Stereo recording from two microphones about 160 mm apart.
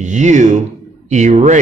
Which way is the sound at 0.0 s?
50° right (ahead or behind).